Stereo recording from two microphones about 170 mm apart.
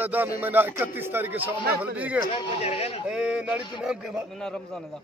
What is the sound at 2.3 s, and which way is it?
Speech, 35° left (ahead or behind).